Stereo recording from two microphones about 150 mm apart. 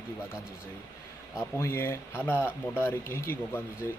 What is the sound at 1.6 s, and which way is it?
Speech, 15° left (ahead or behind).